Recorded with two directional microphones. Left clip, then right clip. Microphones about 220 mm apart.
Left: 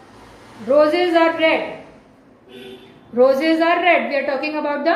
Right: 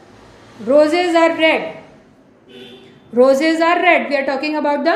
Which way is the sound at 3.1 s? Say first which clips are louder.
Right 2 dB; 50° right (ahead or behind).